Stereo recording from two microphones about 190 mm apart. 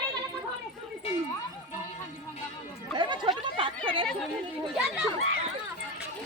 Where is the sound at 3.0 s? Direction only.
25° right (ahead or behind).